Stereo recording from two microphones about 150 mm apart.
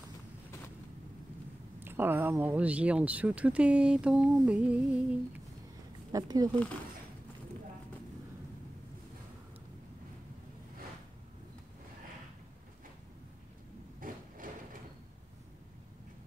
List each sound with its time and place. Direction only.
1.8 s speech: 15° right (ahead or behind)
6.1 s speech: 25° right (ahead or behind)
13.9 s a sound: 65° right (ahead or behind)